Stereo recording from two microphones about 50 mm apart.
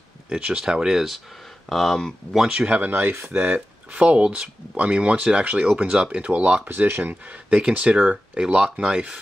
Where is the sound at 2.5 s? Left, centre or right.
Centre.